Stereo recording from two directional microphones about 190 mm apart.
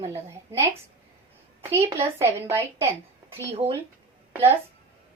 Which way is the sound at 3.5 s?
30° right (ahead or behind).